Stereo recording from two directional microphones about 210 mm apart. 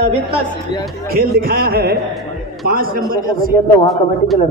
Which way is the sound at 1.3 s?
45° right (ahead or behind).